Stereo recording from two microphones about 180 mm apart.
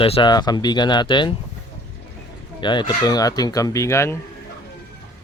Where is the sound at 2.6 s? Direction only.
25° left (ahead or behind).